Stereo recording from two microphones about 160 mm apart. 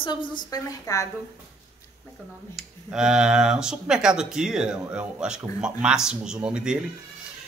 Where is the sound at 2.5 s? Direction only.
5° right (ahead or behind).